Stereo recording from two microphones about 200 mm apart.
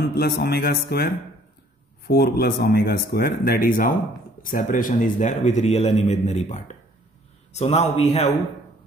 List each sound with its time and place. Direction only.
0.1 s a man's voice: 55° left (ahead or behind); by 8.3 s 30° left (ahead or behind)